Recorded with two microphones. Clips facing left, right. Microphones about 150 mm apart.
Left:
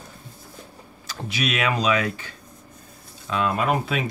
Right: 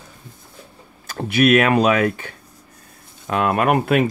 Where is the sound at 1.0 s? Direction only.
55° right (ahead or behind).